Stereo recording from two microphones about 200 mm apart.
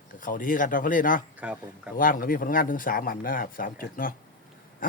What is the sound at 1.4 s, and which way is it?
Speech, 5° right (ahead or behind).